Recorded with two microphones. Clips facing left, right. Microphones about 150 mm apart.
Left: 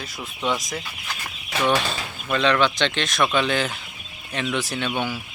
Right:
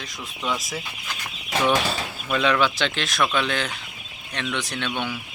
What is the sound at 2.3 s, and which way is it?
Speech, 5° right (ahead or behind).